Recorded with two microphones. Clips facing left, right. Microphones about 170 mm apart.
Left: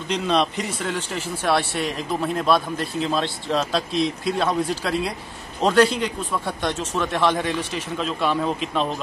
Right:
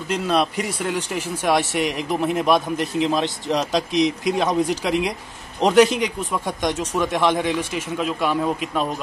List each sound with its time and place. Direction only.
0.1 s a man's voice: 5° right (ahead or behind)